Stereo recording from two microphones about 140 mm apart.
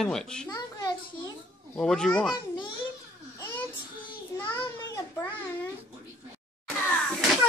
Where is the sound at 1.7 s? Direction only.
5° left (ahead or behind).